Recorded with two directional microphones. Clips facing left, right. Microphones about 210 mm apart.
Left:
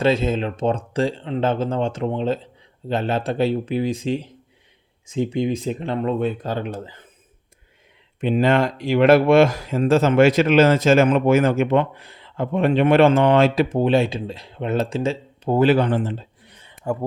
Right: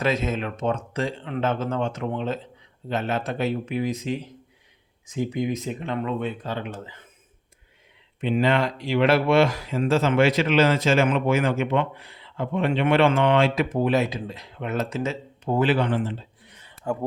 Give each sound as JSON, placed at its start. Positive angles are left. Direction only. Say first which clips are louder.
{"t": 0.0, "sound": "speech", "louder": "left 5 dB", "side_deg": 30}
{"t": 8.2, "sound": "speech", "louder": "left 4 dB", "side_deg": 45}
{"t": 13.7, "sound": "speech", "louder": "left 4 dB", "side_deg": 30}
{"t": 16.7, "sound": "a sound", "louder": "left 3 dB", "side_deg": 10}